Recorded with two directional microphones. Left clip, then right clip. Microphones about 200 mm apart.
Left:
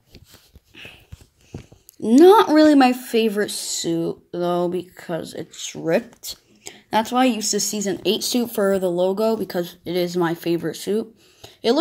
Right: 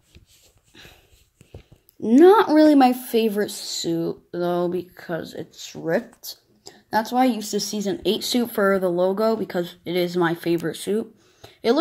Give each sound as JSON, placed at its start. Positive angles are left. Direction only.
{"t": 2.0, "sound": "speech", "side_deg": 10}
{"t": 6.6, "sound": "a sound", "side_deg": 35}
{"t": 7.1, "sound": "speech", "side_deg": 10}